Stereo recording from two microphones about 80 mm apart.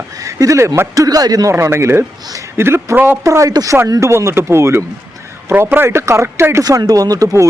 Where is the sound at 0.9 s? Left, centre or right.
Right.